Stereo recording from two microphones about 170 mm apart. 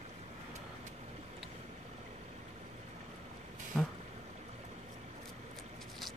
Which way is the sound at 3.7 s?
Centre (ahead or behind).